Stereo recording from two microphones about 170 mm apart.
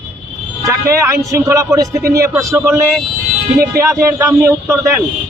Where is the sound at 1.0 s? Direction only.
15° right (ahead or behind).